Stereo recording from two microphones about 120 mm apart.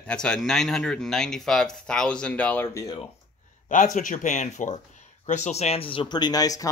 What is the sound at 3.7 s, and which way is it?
Speech, 90° left.